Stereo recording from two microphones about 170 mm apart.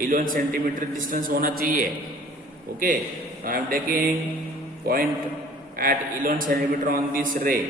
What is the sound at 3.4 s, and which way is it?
A man's voice, 60° right (ahead or behind).